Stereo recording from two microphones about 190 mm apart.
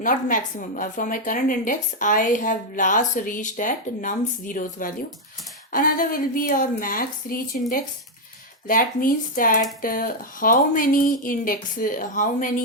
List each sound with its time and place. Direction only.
0.0 s a woman's voice: 45° left (ahead or behind)